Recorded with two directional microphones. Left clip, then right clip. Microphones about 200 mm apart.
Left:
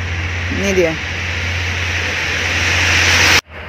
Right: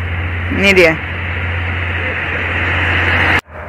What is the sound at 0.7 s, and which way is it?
Speech, 5° left (ahead or behind).